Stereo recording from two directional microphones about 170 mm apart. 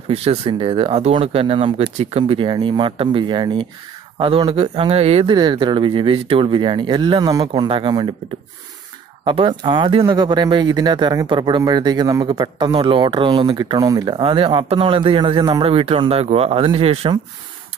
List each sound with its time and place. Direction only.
0.1 s speech: 35° right (ahead or behind)
9.2 s speech: 30° right (ahead or behind)